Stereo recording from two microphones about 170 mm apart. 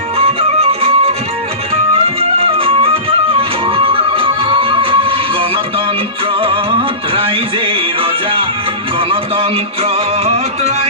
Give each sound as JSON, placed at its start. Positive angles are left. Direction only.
{"t": 0.4, "sound": "music", "side_deg": -35}
{"t": 2.1, "sound": "music", "side_deg": -35}